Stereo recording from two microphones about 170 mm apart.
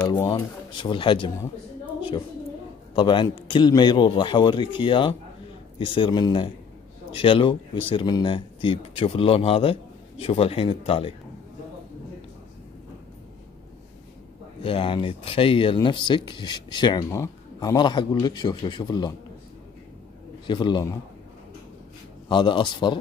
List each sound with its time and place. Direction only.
0.1 s speech: 25° left (ahead or behind)
3.0 s speech: 30° left (ahead or behind)
14.6 s speech: 30° left (ahead or behind)
20.4 s speech: 25° left (ahead or behind)
22.3 s speech: 30° left (ahead or behind)